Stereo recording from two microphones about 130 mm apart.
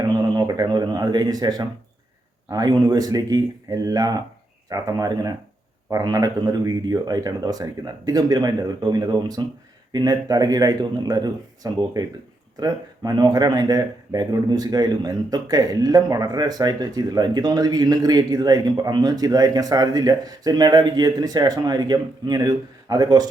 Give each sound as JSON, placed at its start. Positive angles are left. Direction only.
{"t": 0.1, "sound": "speech", "side_deg": -30}